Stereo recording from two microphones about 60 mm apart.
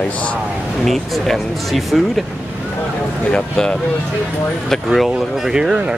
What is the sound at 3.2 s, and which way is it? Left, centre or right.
Speech, centre.